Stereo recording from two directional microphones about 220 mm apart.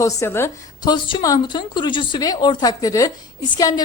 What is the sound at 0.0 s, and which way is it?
A woman's voice, 10° left (ahead or behind).